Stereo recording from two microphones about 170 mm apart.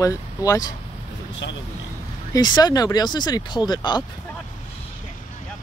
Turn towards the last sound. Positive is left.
turn(degrees=25)  # may be behind; listen again after turning